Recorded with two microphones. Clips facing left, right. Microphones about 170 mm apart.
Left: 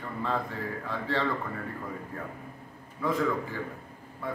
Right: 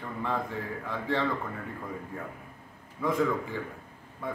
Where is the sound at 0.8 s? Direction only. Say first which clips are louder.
Right 1 dB; 15° right (ahead or behind).